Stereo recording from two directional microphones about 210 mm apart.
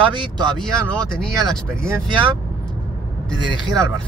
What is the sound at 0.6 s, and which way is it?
Speech, 5° left (ahead or behind).